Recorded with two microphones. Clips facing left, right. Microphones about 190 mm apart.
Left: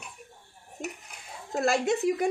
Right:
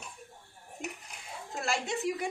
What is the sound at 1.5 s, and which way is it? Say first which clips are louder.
Speech: left 9 dB; 40° left (ahead or behind).